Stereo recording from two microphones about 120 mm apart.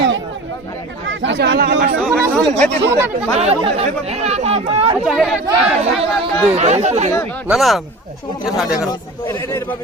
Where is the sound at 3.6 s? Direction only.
60° right (ahead or behind).